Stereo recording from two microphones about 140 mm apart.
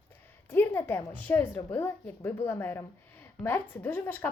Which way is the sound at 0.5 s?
15° left (ahead or behind).